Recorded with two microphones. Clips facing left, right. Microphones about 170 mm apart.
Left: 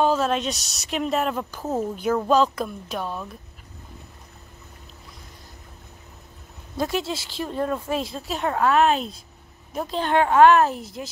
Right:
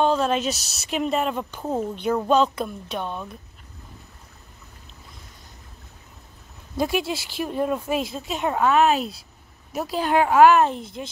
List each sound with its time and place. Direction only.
0.0 s speech: 5° left (ahead or behind)
7.0 s speech: 25° left (ahead or behind)
7.2 s a woman's voice: 10° right (ahead or behind)